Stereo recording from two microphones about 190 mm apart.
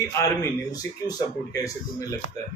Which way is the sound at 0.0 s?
15° left (ahead or behind).